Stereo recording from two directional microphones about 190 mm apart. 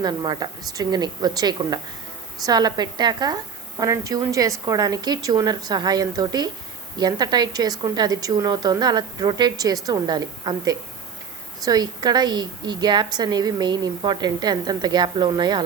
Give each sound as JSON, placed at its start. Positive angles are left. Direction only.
{"t": 0.0, "sound": "a woman's voice", "side_deg": -20}